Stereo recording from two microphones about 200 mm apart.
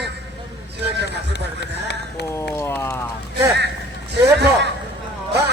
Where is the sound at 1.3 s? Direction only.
55° left (ahead or behind).